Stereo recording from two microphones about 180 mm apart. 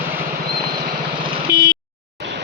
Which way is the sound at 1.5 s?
20° left (ahead or behind).